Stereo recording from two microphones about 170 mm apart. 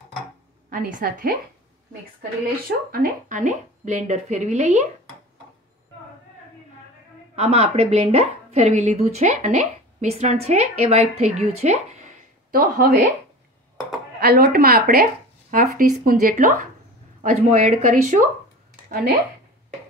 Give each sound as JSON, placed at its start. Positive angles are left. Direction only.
{"t": 0.7, "sound": "speech", "side_deg": -55}
{"t": 2.9, "sound": "a woman's voice", "side_deg": -55}
{"t": 7.3, "sound": "speech", "side_deg": -35}
{"t": 12.4, "sound": "speech", "side_deg": -60}
{"t": 14.2, "sound": "a woman's voice", "side_deg": -60}